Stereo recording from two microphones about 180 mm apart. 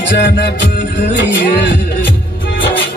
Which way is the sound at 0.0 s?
75° left (ahead or behind).